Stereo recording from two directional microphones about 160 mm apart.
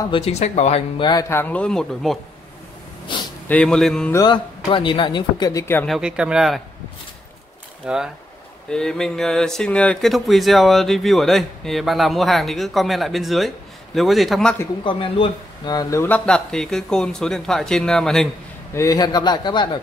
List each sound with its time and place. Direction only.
0.0 s speech: 35° left (ahead or behind)
1.3 s speech: 10° left (ahead or behind)
3.4 s speech: 5° left (ahead or behind)
4.1 s speech: 20° left (ahead or behind)
5.9 s speech: 5° right (ahead or behind)
7.8 s speech: 5° right (ahead or behind)
14.9 s speech: 35° left (ahead or behind); by 16.2 s 15° left (ahead or behind)
16.3 s speech: 5° left (ahead or behind)
18.7 s speech: 20° left (ahead or behind)